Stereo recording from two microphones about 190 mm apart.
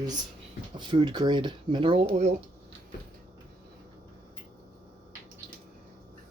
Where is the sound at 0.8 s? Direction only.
25° right (ahead or behind).